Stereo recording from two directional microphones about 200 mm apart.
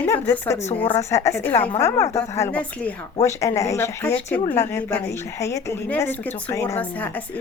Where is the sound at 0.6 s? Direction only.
30° left (ahead or behind).